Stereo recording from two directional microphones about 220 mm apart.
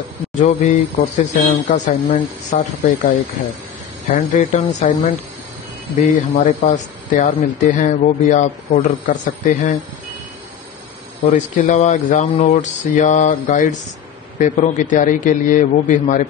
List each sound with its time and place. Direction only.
0.4 s speech: 35° left (ahead or behind)
11.3 s speech: 35° left (ahead or behind)